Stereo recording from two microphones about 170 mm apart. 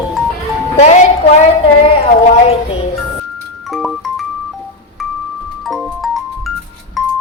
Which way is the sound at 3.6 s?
Centre (ahead or behind).